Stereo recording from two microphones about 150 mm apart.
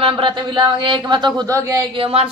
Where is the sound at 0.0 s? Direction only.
35° right (ahead or behind).